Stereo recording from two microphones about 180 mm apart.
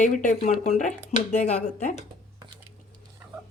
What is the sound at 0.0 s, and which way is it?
Speech, 45° left (ahead or behind).